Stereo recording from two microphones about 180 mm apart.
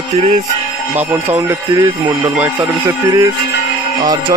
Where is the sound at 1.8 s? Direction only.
20° right (ahead or behind).